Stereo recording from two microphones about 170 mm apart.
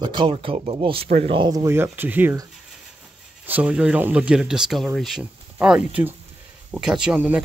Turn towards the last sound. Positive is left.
turn(degrees=-10)  # may be behind; listen again after turning